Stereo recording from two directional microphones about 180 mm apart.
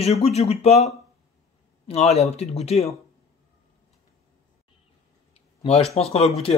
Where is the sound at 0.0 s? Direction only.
35° left (ahead or behind).